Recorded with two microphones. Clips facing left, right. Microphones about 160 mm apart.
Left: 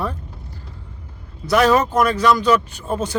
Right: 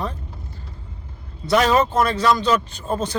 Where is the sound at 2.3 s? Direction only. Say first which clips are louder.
Left 3 dB; 10° left (ahead or behind).